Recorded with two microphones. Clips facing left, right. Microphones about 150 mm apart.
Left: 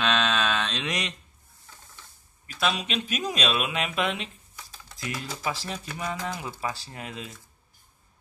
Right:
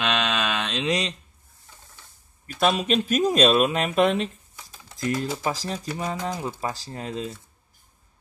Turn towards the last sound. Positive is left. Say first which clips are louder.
# right 7 dB
turn(degrees=-35)  # may be behind; listen again after turning